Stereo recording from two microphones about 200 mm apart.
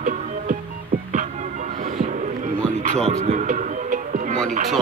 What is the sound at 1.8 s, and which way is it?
Music, 40° right (ahead or behind).